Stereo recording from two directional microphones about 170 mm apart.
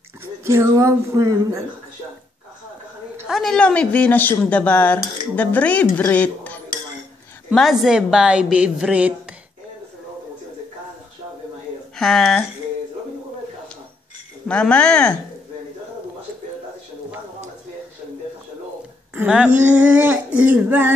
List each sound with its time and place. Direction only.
0.2 s speech: 15° right (ahead or behind)
3.3 s speech: centre (ahead or behind)
7.5 s a woman's voice: centre (ahead or behind)
12.0 s a woman's voice: centre (ahead or behind)
14.5 s speech: 5° left (ahead or behind)
19.1 s a sound: 5° right (ahead or behind)